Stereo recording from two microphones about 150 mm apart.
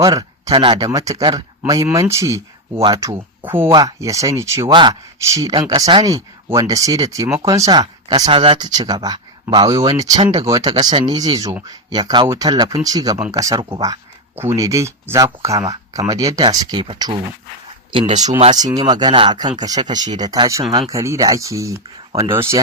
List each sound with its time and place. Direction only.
0.0 s a sound: 25° right (ahead or behind)
0.5 s speech: 35° right (ahead or behind)
0.8 s speech: 20° right (ahead or behind)
3.7 s speech: 25° right (ahead or behind)
4.7 s speech: 30° right (ahead or behind)
18.5 s speech: 25° right (ahead or behind)